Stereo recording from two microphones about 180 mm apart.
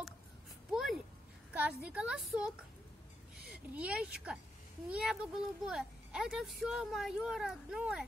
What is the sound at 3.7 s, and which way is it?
A child's voice, 5° right (ahead or behind).